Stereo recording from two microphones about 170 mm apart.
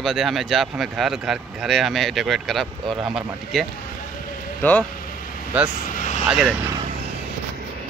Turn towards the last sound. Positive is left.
turn(degrees=0)  # may be behind; listen again after turning